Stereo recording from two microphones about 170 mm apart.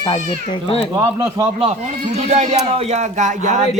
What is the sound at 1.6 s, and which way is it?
Speech, 40° right (ahead or behind).